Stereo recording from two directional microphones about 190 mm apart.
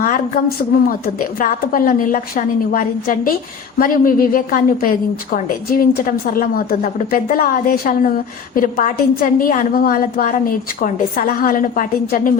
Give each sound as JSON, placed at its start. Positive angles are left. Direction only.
{"t": 0.0, "sound": "a woman's voice", "side_deg": 45}